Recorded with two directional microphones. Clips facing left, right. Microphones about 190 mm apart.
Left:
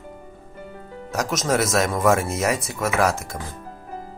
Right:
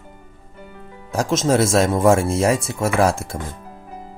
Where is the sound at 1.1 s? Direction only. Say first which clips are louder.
Right 4 dB; 30° right (ahead or behind).